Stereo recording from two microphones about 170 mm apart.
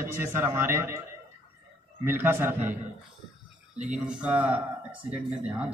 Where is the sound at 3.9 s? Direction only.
5° right (ahead or behind).